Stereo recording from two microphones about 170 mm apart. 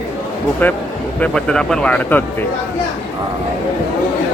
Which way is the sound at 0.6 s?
10° left (ahead or behind).